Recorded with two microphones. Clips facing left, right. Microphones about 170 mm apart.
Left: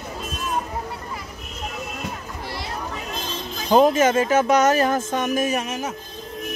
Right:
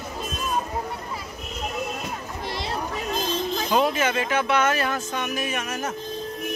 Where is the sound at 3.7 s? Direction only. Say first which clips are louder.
Left 8 dB; 45° left (ahead or behind).